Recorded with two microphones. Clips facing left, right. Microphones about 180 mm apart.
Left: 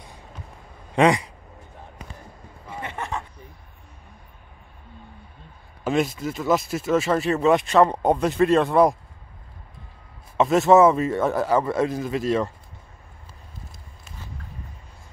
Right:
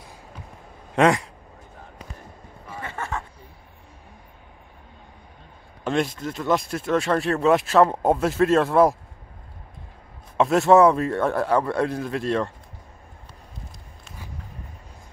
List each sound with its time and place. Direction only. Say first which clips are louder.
0.9 s speech: even; centre (ahead or behind)
2.7 s a sound: left 1 dB; 20° left (ahead or behind)
5.9 s speech: left 1 dB; 5° left (ahead or behind)
10.3 s speech: even; centre (ahead or behind)